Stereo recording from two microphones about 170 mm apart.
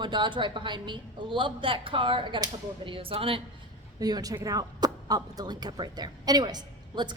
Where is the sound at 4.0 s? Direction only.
20° right (ahead or behind).